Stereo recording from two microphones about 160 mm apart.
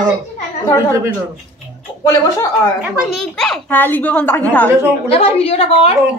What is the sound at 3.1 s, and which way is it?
Speech, centre (ahead or behind).